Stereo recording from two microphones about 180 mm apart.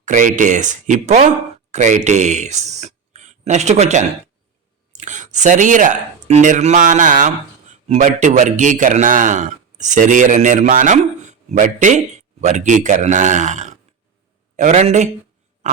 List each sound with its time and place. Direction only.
0.0 s a man's voice: 45° right (ahead or behind)